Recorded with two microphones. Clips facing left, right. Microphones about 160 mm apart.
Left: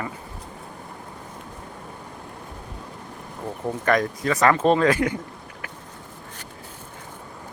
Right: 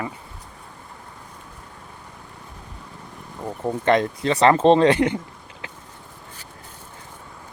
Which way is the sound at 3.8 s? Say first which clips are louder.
Right 2 dB; 25° right (ahead or behind).